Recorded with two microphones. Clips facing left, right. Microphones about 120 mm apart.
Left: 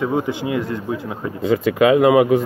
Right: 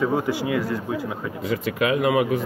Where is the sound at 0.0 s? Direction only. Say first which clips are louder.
Left 2 dB; 20° left (ahead or behind).